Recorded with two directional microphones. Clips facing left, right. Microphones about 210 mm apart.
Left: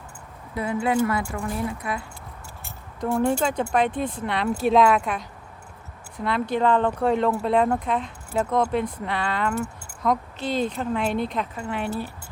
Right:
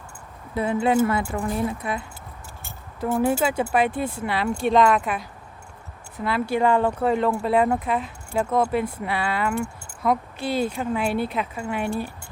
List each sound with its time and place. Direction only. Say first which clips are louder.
0.5 s speech: right 3 dB; 25° right (ahead or behind)
2.6 s speech: right 1 dB; 5° right (ahead or behind)